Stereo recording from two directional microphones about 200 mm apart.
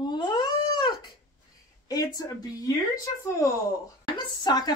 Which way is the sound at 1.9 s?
20° left (ahead or behind).